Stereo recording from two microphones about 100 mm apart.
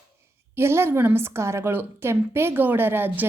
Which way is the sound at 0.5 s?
25° right (ahead or behind).